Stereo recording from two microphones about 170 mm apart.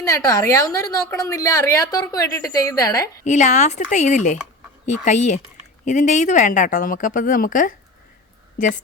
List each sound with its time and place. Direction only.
0.0 s a woman's voice: 20° left (ahead or behind)
3.2 s a woman's voice: 45° left (ahead or behind)